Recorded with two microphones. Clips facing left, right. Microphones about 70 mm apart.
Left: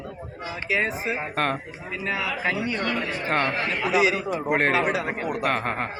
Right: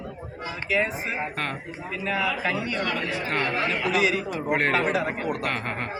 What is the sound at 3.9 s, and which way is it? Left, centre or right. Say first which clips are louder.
Speech: left 5 dB; centre.